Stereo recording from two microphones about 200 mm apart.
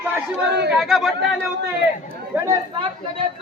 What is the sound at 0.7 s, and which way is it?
Speech, centre (ahead or behind).